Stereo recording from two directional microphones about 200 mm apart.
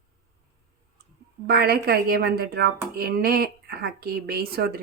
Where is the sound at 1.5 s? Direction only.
50° right (ahead or behind).